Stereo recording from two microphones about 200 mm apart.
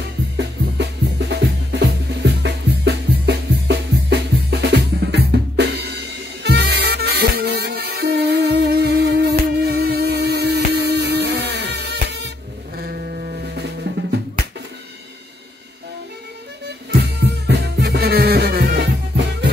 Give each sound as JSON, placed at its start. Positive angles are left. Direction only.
{"t": 0.4, "sound": "music", "side_deg": -60}
{"t": 12.7, "sound": "a sound", "side_deg": -50}
{"t": 17.5, "sound": "music", "side_deg": -55}